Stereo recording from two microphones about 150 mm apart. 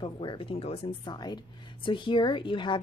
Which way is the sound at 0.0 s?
30° left (ahead or behind).